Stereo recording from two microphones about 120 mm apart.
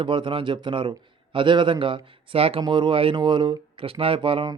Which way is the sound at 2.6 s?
40° right (ahead or behind).